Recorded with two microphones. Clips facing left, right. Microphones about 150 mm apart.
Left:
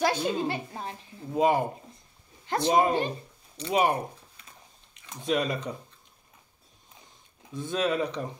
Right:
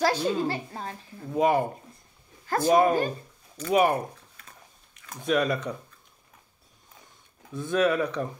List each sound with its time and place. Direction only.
0.2 s a woman's voice: 20° left (ahead or behind)
5.0 s a woman's voice: 25° left (ahead or behind)
7.5 s a woman's voice: 20° left (ahead or behind)